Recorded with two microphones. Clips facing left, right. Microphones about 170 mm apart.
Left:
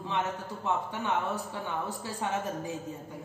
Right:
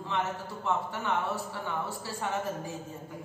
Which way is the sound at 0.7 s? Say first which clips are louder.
Even; 15° left (ahead or behind).